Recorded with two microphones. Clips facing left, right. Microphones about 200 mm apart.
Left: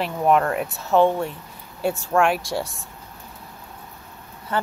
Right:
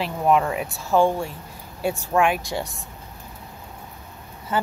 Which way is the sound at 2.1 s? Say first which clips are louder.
Left 1 dB; centre (ahead or behind).